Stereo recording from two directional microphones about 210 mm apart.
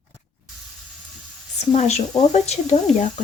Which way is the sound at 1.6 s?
30° left (ahead or behind).